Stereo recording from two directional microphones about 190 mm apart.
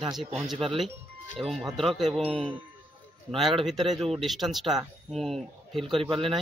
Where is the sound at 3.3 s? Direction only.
30° right (ahead or behind).